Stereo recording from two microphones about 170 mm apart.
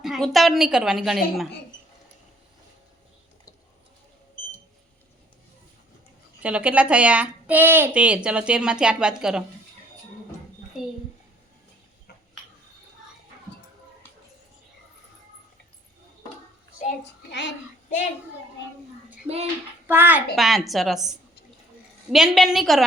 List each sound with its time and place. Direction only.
0.0 s a woman's voice: centre (ahead or behind)
6.4 s a woman's voice: 10° right (ahead or behind)
17.0 s child singing: 90° left
19.9 s a woman's voice: 10° right (ahead or behind)
20.3 s a woman's voice: centre (ahead or behind)